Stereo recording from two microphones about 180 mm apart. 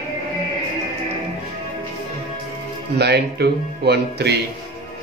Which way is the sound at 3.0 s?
65° right (ahead or behind).